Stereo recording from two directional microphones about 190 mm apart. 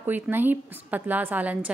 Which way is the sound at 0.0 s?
10° right (ahead or behind).